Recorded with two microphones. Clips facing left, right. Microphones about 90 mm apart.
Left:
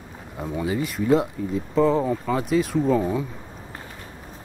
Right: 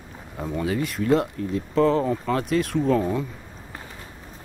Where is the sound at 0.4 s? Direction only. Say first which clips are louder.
Even; 5° left (ahead or behind).